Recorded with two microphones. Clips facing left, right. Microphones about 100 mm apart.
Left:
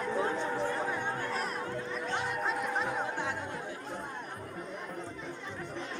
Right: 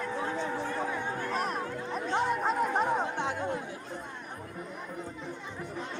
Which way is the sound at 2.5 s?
45° right (ahead or behind).